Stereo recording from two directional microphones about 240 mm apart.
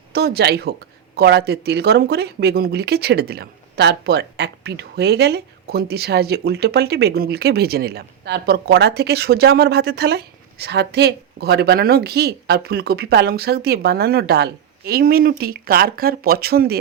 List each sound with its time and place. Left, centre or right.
0.1 s speech: right